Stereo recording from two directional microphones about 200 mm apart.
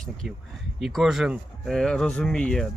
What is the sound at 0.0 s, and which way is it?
A man's voice, centre (ahead or behind).